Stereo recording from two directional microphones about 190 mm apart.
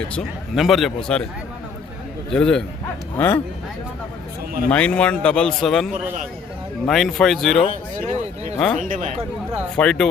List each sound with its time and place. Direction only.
0.2 s speech: centre (ahead or behind)
2.3 s speech: 5° left (ahead or behind)
4.7 s speech: 5° left (ahead or behind)
7.7 s speech: 40° right (ahead or behind)
8.5 s speech: 5° left (ahead or behind)
8.8 s speech: 40° right (ahead or behind)
9.7 s speech: 5° left (ahead or behind)